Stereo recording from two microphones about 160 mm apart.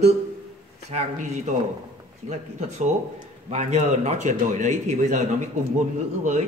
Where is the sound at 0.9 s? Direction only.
45° right (ahead or behind).